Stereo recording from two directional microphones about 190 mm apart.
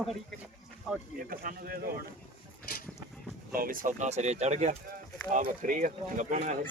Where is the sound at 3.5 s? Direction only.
50° right (ahead or behind).